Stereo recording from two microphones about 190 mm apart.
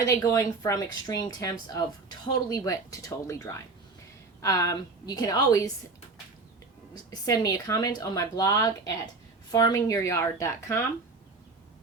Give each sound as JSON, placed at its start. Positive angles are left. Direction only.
{"t": 0.0, "sound": "a woman's voice", "side_deg": 15}
{"t": 6.9, "sound": "a woman's voice", "side_deg": 20}